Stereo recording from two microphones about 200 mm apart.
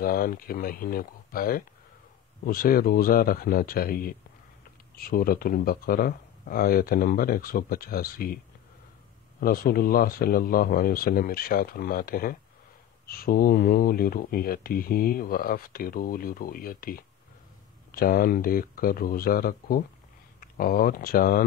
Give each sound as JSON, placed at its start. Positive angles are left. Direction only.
{"t": 0.0, "sound": "speech", "side_deg": 45}
{"t": 9.4, "sound": "speech", "side_deg": 45}